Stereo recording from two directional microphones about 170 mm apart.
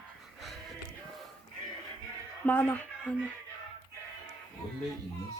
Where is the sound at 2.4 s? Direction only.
10° left (ahead or behind).